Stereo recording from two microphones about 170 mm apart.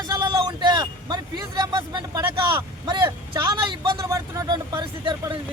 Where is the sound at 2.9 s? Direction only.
25° right (ahead or behind).